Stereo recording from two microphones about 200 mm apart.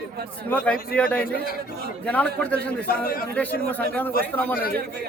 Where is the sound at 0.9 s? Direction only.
10° left (ahead or behind).